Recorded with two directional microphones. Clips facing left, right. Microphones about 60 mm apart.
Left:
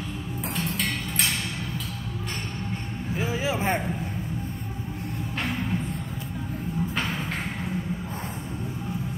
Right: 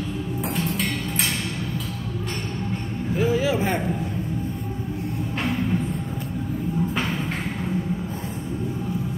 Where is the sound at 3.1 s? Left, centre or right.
Centre.